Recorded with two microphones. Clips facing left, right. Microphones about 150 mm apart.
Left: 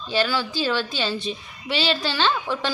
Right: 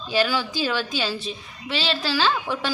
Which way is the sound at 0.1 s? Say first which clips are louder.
Right 1 dB; 10° right (ahead or behind).